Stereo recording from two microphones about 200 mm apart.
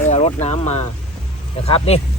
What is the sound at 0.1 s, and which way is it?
Speech, 30° left (ahead or behind).